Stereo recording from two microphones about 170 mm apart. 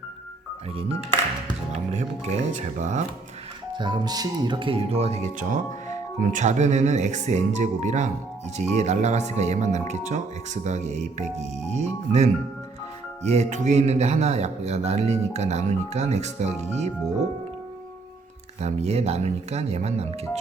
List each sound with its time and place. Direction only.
1.5 s speech: 40° right (ahead or behind)
3.8 s speech: 25° right (ahead or behind)
18.6 s speech: 40° right (ahead or behind)